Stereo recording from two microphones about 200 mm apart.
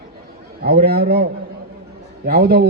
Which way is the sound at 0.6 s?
50° right (ahead or behind).